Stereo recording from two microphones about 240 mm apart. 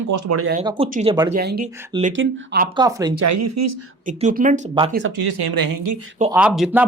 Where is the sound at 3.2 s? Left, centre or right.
Right.